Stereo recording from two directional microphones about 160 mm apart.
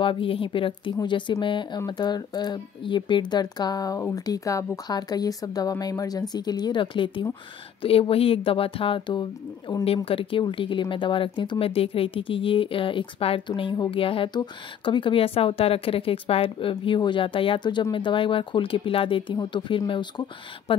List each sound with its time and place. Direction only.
0.0 s speech: 35° left (ahead or behind)